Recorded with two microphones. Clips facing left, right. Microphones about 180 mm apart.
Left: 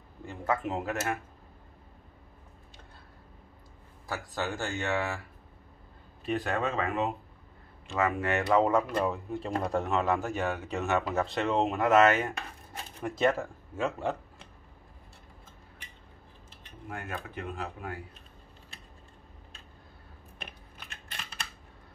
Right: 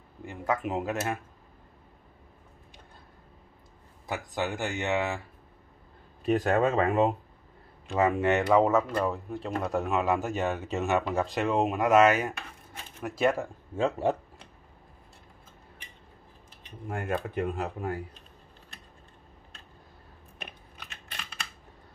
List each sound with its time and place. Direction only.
0.2 s speech: 15° right (ahead or behind)
4.1 s speech: 15° right (ahead or behind)
6.2 s speech: 40° right (ahead or behind)
8.0 s speech: 25° right (ahead or behind)
8.5 s speech: 5° right (ahead or behind)
13.7 s speech: 35° right (ahead or behind)
16.9 s speech: 50° right (ahead or behind)